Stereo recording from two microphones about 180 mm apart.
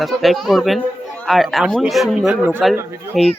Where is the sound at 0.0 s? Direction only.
Centre (ahead or behind).